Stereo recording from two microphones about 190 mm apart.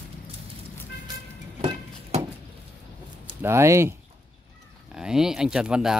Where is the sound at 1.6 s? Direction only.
30° right (ahead or behind).